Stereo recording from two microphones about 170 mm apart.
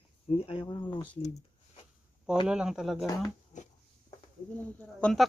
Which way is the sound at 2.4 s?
5° right (ahead or behind).